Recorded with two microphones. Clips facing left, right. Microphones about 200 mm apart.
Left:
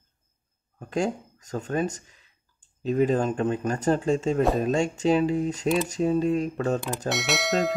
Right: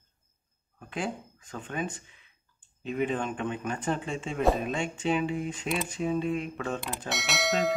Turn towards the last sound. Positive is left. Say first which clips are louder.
# left 3 dB
turn(degrees=0)  # may be behind; listen again after turning